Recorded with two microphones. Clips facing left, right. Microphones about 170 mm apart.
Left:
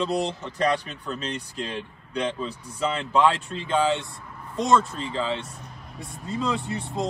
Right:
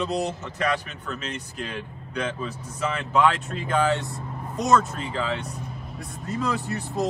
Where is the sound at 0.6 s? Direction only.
35° left (ahead or behind).